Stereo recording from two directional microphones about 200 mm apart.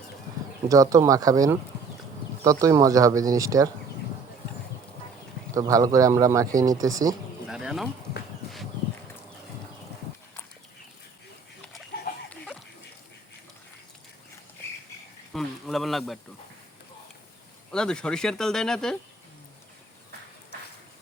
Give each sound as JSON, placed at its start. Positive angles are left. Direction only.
{"t": 0.7, "sound": "speech", "side_deg": -15}
{"t": 5.5, "sound": "speech", "side_deg": -15}
{"t": 7.4, "sound": "bird", "side_deg": 0}
{"t": 15.3, "sound": "insect", "side_deg": 0}
{"t": 17.7, "sound": "speech", "side_deg": 5}